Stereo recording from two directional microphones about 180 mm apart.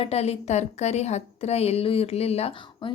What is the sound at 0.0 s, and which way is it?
A woman's voice, 35° left (ahead or behind).